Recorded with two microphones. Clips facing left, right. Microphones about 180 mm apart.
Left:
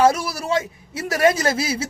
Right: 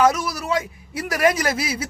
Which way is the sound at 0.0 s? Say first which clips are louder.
Left 1 dB; 30° left (ahead or behind).